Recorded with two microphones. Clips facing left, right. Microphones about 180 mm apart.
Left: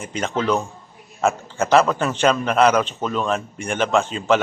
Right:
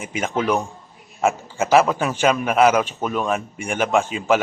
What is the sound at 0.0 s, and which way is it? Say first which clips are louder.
A man's voice: even; 5° right (ahead or behind).